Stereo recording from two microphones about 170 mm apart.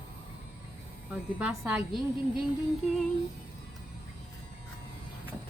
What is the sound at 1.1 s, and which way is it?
A woman's voice, 10° right (ahead or behind).